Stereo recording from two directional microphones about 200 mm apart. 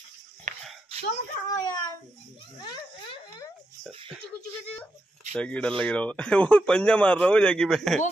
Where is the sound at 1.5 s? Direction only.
20° left (ahead or behind).